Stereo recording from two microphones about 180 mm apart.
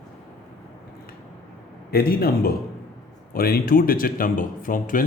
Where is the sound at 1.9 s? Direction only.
55° left (ahead or behind).